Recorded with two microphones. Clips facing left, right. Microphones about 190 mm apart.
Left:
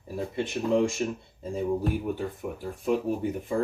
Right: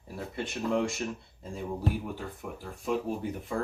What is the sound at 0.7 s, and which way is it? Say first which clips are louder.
Speech: left 5 dB; 20° left (ahead or behind).